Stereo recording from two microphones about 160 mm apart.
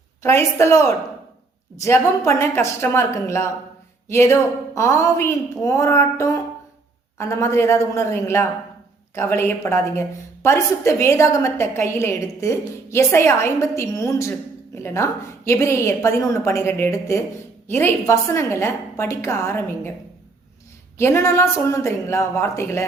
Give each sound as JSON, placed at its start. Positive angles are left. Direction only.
{"t": 0.2, "sound": "a woman's voice", "side_deg": 15}
{"t": 21.0, "sound": "a woman's voice", "side_deg": 15}